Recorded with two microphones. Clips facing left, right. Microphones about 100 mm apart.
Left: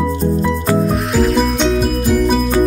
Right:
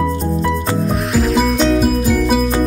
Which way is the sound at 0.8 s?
Centre (ahead or behind).